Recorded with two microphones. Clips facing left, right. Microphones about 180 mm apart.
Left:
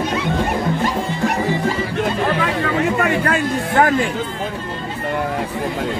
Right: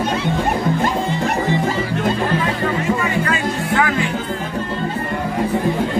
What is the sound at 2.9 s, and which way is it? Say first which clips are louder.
Music: left 2 dB; 60° left (ahead or behind).